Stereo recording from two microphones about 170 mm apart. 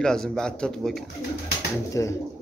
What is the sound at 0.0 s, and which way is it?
Speech, 5° left (ahead or behind).